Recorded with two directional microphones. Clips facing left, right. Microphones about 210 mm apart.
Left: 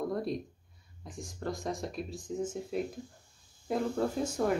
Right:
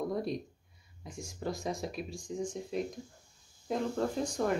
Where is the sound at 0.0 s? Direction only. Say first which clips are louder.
Left 1 dB; centre (ahead or behind).